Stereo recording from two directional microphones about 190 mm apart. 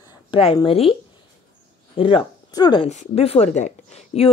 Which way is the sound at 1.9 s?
30° left (ahead or behind).